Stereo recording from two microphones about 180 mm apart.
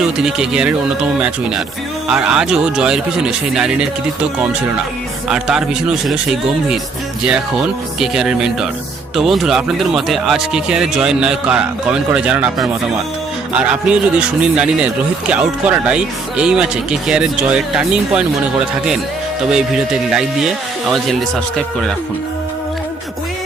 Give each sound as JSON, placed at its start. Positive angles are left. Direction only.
{"t": 0.2, "sound": "speech", "side_deg": -5}
{"t": 5.3, "sound": "speech", "side_deg": -5}
{"t": 7.9, "sound": "speech", "side_deg": -5}
{"t": 19.5, "sound": "speech", "side_deg": -5}